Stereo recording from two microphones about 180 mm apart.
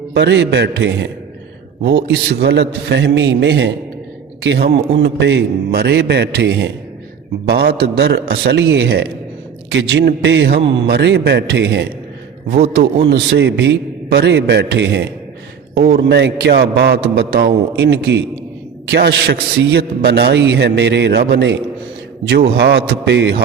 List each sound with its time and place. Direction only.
0.1 s a man's voice: 75° right (ahead or behind)
12.5 s a man's voice: 60° right (ahead or behind)